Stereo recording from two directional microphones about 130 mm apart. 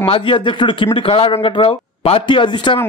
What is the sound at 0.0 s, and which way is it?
A man's voice, 40° left (ahead or behind).